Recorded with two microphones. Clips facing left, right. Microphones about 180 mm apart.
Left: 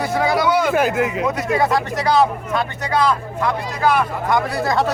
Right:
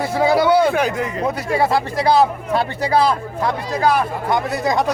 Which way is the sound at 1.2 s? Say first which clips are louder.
Even; 30° right (ahead or behind).